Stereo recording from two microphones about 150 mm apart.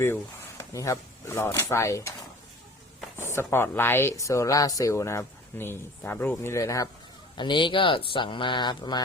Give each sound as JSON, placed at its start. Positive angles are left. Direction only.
{"t": 0.7, "sound": "speech", "side_deg": 20}
{"t": 3.2, "sound": "speech", "side_deg": 15}
{"t": 7.3, "sound": "speech", "side_deg": 30}